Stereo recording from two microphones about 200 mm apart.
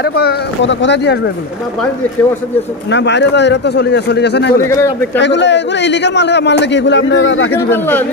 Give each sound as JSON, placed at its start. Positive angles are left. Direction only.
{"t": 0.0, "sound": "a man's voice", "side_deg": 55}
{"t": 2.9, "sound": "a man's voice", "side_deg": 60}
{"t": 4.6, "sound": "a man's voice", "side_deg": 15}
{"t": 5.2, "sound": "a man's voice", "side_deg": 60}
{"t": 7.5, "sound": "a man's voice", "side_deg": 10}